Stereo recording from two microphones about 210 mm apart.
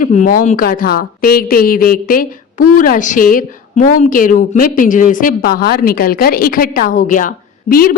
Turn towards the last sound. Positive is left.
turn(degrees=45)  # may be behind; listen again after turning